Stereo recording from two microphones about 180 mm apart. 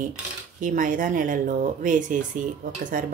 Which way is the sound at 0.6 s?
50° right (ahead or behind).